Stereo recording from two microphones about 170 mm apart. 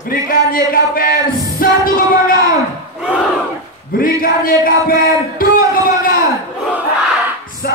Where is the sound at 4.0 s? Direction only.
55° left (ahead or behind).